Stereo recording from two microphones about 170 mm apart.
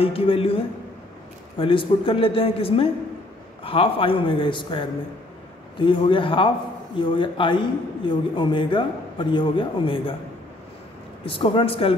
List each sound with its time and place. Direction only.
0.0 s a man's voice: 35° left (ahead or behind)
11.2 s a man's voice: 30° left (ahead or behind)